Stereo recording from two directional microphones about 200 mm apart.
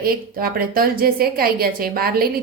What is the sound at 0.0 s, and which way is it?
A woman's voice, 50° right (ahead or behind).